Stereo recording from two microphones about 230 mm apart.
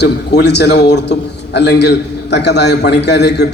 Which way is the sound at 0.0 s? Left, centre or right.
Left.